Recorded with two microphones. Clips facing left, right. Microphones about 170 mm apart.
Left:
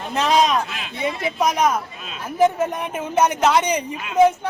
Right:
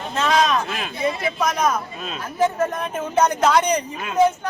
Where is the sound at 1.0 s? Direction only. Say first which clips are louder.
Left 1 dB; 15° left (ahead or behind).